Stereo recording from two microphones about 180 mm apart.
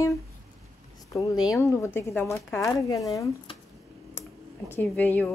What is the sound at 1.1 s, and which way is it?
A woman's voice, 20° left (ahead or behind).